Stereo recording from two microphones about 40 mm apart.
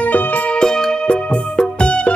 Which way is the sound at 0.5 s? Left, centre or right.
Centre.